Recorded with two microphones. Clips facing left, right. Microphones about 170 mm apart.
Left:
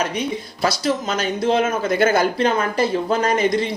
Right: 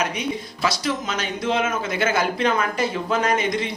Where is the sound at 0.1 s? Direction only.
35° left (ahead or behind).